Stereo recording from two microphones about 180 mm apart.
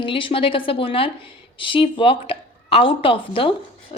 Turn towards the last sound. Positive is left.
turn(degrees=30)  # may be behind; listen again after turning